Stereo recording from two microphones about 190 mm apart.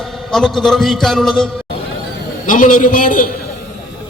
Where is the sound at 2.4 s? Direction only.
45° left (ahead or behind).